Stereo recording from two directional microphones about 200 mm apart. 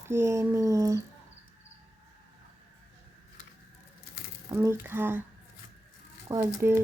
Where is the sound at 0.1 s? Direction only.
15° right (ahead or behind).